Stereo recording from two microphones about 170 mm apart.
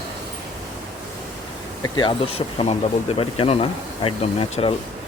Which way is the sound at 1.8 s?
25° left (ahead or behind).